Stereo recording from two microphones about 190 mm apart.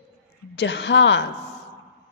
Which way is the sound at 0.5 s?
65° left (ahead or behind).